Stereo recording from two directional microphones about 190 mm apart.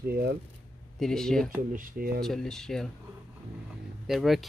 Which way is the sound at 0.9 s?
5° left (ahead or behind).